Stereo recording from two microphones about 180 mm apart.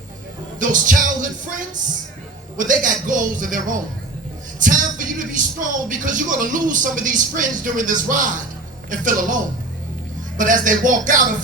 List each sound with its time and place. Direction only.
0.6 s a woman's voice: 45° right (ahead or behind)
10.3 s a woman's voice: 45° right (ahead or behind)